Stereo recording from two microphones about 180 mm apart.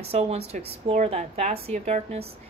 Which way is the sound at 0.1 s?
35° right (ahead or behind).